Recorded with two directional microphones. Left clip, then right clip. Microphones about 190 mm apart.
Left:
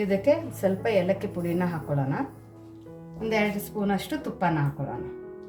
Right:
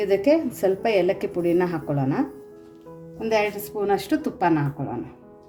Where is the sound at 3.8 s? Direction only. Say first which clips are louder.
Right 8 dB; 40° right (ahead or behind).